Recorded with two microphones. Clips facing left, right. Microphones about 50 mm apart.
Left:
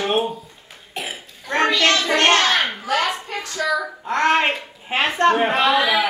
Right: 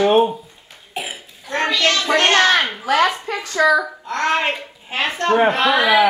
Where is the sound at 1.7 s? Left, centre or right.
Centre.